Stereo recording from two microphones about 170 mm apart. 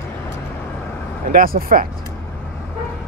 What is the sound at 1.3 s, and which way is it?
Speech, 60° right (ahead or behind).